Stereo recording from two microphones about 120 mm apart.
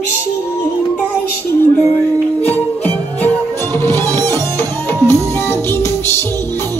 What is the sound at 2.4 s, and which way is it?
Music, 15° left (ahead or behind).